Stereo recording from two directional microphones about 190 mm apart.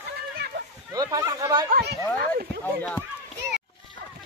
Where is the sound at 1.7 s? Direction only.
60° right (ahead or behind).